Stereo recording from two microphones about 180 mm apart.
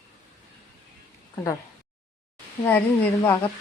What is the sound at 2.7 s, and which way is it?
Speech, 10° left (ahead or behind).